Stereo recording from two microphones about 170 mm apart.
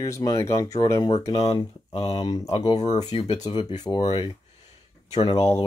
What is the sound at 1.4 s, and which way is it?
Speech, 30° left (ahead or behind).